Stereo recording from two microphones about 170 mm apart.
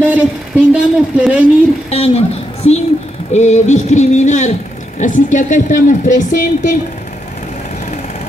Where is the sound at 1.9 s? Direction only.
35° left (ahead or behind).